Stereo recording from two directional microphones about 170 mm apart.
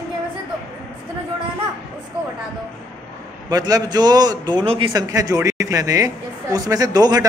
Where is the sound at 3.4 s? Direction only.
25° right (ahead or behind).